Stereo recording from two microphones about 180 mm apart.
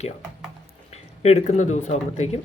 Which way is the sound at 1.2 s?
35° left (ahead or behind).